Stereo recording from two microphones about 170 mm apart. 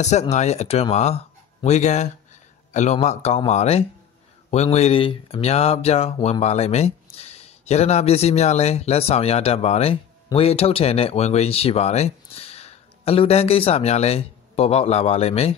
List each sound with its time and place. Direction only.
0.0 s speech: 40° left (ahead or behind)